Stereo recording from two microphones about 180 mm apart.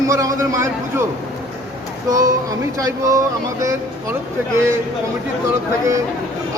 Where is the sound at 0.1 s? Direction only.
15° right (ahead or behind).